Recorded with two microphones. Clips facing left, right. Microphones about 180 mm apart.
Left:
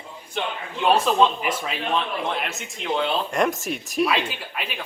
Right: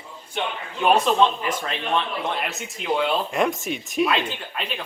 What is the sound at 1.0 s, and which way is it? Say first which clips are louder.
Speech: even; 5° left (ahead or behind).